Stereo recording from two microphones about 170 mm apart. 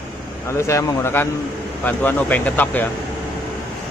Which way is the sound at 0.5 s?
15° left (ahead or behind).